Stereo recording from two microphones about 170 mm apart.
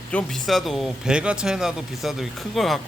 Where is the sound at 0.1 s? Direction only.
5° left (ahead or behind).